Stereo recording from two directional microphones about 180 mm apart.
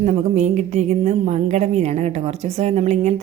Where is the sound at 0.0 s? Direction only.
40° right (ahead or behind).